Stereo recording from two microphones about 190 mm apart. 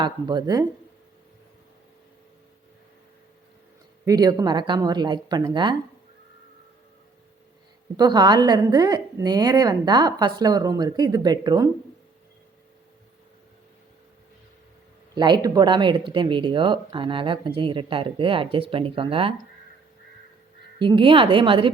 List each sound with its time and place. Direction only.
0.0 s speech: 20° right (ahead or behind)
4.0 s speech: 20° right (ahead or behind)
7.9 s speech: 20° right (ahead or behind)
15.1 s speech: 20° right (ahead or behind)
20.7 s speech: 25° right (ahead or behind)